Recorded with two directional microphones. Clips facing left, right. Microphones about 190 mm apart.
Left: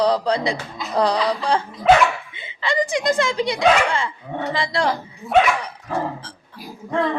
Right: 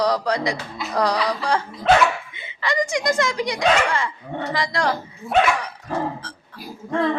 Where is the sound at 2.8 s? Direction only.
30° left (ahead or behind).